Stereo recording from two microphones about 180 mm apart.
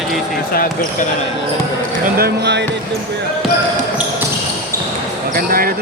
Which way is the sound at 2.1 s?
65° right (ahead or behind).